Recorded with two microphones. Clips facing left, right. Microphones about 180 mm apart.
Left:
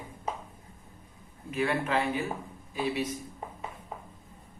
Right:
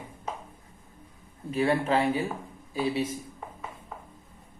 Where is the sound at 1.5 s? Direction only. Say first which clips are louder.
Right 4 dB; 35° right (ahead or behind).